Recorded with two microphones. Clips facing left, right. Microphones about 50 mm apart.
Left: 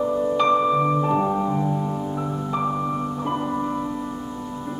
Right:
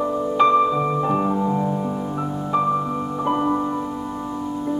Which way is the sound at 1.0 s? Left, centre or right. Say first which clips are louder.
Right 1 dB; centre.